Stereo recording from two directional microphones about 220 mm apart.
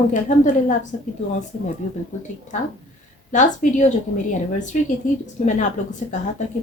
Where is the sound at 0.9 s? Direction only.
35° left (ahead or behind).